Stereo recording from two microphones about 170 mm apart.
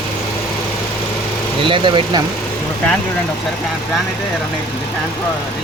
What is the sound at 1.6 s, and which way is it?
Speech, 30° right (ahead or behind).